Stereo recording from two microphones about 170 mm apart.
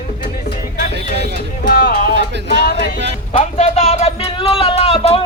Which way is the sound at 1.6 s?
60° left (ahead or behind).